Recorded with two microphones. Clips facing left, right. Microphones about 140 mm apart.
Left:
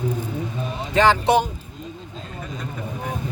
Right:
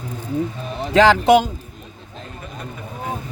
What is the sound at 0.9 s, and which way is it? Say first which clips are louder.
Speech: right 4 dB; 90° right.